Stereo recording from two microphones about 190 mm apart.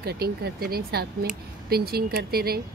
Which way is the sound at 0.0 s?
55° right (ahead or behind).